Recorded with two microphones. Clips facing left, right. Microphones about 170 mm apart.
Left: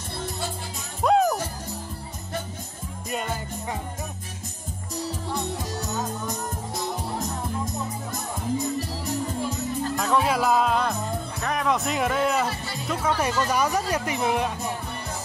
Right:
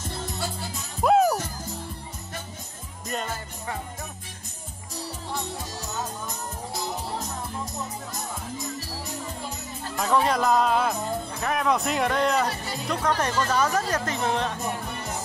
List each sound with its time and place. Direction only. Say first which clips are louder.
1.0 s music: right 1 dB; 5° right (ahead or behind)
9.9 s music: right 2 dB; centre (ahead or behind)
11.4 s speech: right 1 dB; centre (ahead or behind)